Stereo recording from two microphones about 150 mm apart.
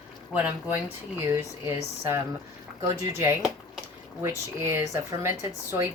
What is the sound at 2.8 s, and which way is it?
A woman's voice, 20° right (ahead or behind).